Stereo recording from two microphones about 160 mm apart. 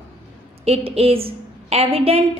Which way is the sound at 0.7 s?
40° right (ahead or behind).